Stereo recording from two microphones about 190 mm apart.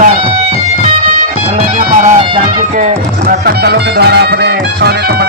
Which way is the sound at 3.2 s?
55° right (ahead or behind).